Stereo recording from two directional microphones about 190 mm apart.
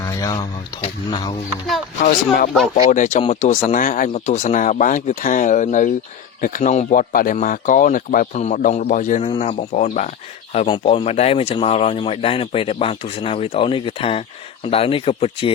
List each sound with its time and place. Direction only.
0.0 s a sound: 15° left (ahead or behind)
0.3 s speech: 30° left (ahead or behind)
2.0 s speech: 45° left (ahead or behind)